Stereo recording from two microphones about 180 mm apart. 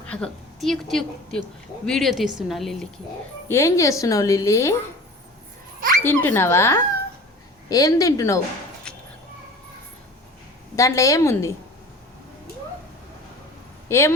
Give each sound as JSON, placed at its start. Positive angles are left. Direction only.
{"t": 0.0, "sound": "a woman's voice", "side_deg": 5}
{"t": 3.5, "sound": "a woman's voice", "side_deg": 15}
{"t": 6.0, "sound": "a woman's voice", "side_deg": 10}
{"t": 10.8, "sound": "a woman's voice", "side_deg": 15}
{"t": 13.8, "sound": "speech", "side_deg": 15}